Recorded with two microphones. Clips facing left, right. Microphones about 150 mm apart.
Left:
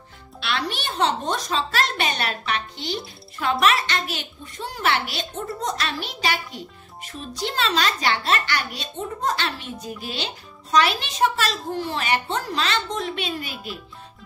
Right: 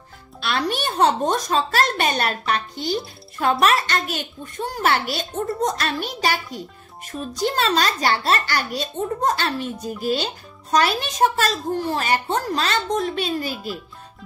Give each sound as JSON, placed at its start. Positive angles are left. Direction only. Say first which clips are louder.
{"t": 0.4, "sound": "a child's voice", "louder": "right 4 dB", "side_deg": -40}